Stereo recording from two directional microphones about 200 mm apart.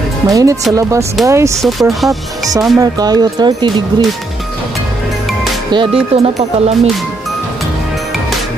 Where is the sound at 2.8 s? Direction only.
20° right (ahead or behind).